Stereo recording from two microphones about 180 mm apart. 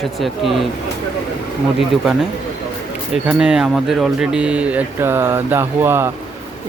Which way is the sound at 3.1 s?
5° right (ahead or behind).